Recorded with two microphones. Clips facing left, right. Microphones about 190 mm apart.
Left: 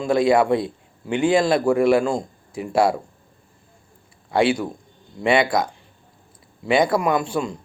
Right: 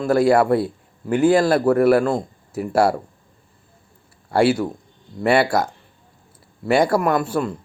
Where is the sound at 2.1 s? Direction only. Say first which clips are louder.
Right 2 dB; 5° right (ahead or behind).